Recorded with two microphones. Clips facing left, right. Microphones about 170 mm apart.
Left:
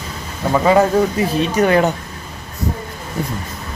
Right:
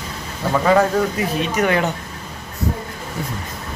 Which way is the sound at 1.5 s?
35° left (ahead or behind).